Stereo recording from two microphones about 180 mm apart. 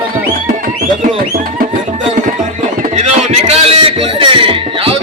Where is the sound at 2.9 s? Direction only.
35° right (ahead or behind).